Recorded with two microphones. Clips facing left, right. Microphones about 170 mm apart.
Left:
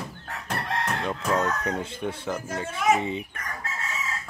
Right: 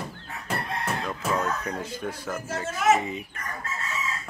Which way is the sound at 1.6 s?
25° left (ahead or behind).